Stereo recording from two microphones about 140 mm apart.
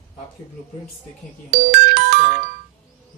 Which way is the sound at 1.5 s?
90° right.